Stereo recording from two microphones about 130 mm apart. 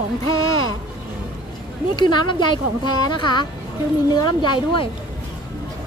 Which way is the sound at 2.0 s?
35° left (ahead or behind).